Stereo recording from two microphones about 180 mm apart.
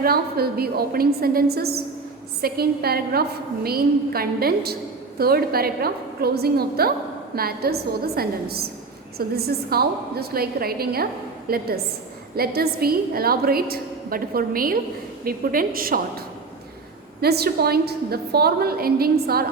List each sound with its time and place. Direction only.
0.0 s a woman's voice: 60° right (ahead or behind)